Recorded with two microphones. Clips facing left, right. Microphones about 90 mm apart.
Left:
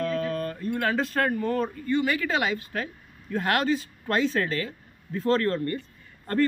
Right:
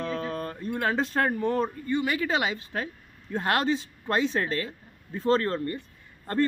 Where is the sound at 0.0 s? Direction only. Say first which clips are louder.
Left 3 dB; 25° right (ahead or behind).